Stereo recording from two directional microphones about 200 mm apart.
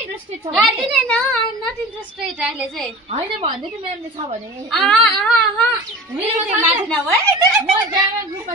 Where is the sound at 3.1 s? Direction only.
30° right (ahead or behind).